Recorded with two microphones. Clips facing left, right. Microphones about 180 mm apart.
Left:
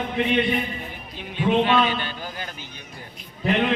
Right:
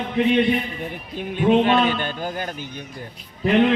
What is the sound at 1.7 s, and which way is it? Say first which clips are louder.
Speech: right 2 dB; 45° right (ahead or behind).